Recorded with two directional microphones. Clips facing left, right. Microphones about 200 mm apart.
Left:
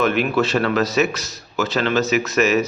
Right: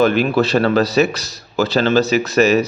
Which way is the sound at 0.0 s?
35° right (ahead or behind).